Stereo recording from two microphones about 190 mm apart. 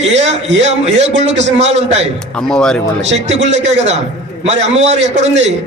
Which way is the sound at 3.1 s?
35° right (ahead or behind).